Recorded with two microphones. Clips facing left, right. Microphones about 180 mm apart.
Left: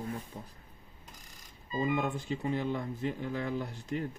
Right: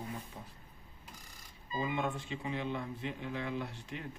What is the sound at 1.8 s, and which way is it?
Speech, 40° left (ahead or behind).